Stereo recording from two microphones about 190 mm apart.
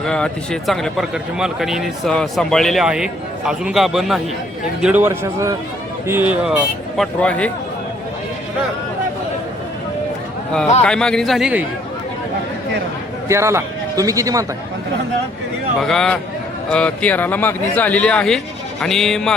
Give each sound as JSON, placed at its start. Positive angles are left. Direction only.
{"t": 0.0, "sound": "a man's voice", "side_deg": 5}
{"t": 6.4, "sound": "speech", "side_deg": 0}
{"t": 10.8, "sound": "speech", "side_deg": 5}
{"t": 13.2, "sound": "a man's voice", "side_deg": -15}
{"t": 15.8, "sound": "speech", "side_deg": 0}